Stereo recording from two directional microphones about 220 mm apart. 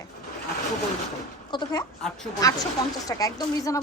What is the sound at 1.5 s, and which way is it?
A woman's voice, 20° left (ahead or behind).